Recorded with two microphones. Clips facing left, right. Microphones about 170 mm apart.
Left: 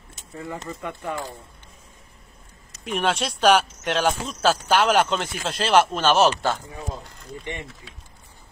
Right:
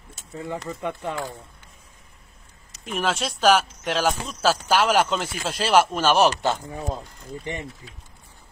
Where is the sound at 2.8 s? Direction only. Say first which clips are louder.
Left 2 dB; centre (ahead or behind); by 6.5 s 15° right (ahead or behind).